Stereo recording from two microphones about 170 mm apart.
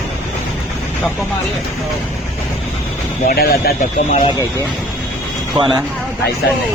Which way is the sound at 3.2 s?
60° left (ahead or behind).